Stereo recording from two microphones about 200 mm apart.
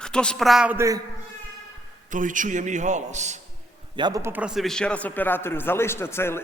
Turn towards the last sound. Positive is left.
turn(degrees=10)  # may be behind; listen again after turning